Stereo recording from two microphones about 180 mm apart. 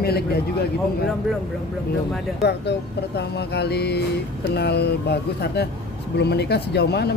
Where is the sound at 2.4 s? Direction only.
65° left (ahead or behind).